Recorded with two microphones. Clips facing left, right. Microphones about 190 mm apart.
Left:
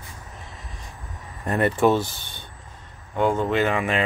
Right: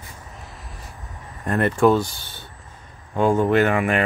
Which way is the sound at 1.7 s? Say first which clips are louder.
Right 3 dB; centre (ahead or behind).